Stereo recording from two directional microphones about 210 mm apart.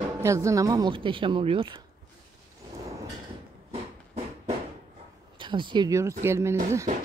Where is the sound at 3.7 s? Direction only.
30° right (ahead or behind).